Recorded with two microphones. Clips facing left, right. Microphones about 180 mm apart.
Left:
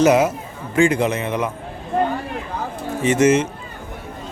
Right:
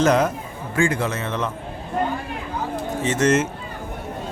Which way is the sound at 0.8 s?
20° left (ahead or behind).